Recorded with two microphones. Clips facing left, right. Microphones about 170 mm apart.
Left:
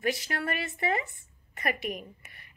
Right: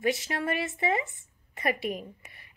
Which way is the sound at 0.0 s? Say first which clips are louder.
Right 2 dB; 25° right (ahead or behind).